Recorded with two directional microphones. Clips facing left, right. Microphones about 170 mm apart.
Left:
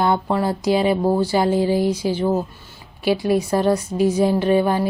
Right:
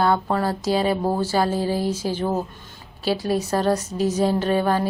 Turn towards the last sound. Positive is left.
turn(degrees=15)  # may be behind; listen again after turning